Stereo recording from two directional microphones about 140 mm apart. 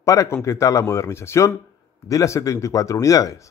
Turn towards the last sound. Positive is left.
turn(degrees=25)  # may be behind; listen again after turning